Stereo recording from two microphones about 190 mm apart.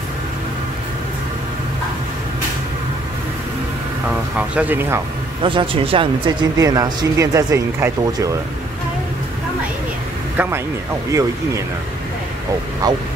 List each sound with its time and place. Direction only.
4.1 s speech: 5° right (ahead or behind)
5.4 s speech: 25° right (ahead or behind)
10.3 s speech: 10° right (ahead or behind)
12.8 s speech: 20° right (ahead or behind)